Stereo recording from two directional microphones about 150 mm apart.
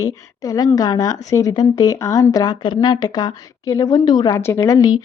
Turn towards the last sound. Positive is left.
turn(degrees=25)  # may be behind; listen again after turning